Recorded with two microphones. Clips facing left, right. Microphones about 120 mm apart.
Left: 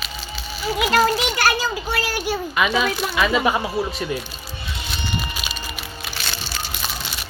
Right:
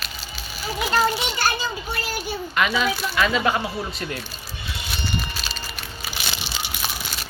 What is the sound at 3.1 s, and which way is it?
Speech, 10° left (ahead or behind).